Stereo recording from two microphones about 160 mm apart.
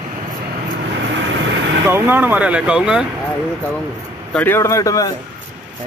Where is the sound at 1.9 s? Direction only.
15° right (ahead or behind).